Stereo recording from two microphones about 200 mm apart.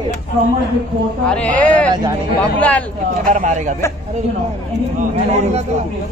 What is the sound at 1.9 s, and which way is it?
Speech, 20° right (ahead or behind).